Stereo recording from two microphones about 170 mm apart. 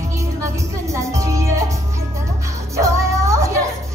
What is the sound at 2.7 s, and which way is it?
Music, 15° right (ahead or behind).